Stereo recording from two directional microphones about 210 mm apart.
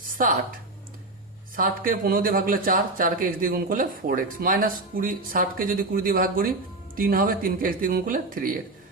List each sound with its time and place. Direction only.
1.5 s speech: 40° right (ahead or behind)